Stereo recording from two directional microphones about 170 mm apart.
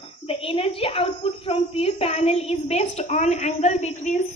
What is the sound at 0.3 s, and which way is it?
A woman's voice, 35° left (ahead or behind).